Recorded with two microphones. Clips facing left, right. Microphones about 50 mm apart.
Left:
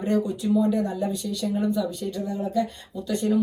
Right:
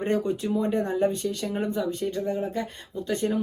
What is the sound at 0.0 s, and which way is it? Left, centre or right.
Speech, right.